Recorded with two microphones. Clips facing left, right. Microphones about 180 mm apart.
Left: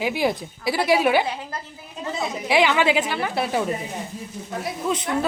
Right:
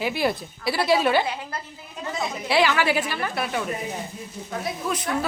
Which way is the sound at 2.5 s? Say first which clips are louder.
Left 2 dB; 20° left (ahead or behind).